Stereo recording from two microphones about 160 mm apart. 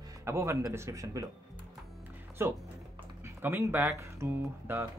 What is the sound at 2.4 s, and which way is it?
Speech, 15° right (ahead or behind).